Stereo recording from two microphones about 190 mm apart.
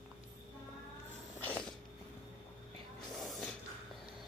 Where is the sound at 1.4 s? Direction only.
5° left (ahead or behind).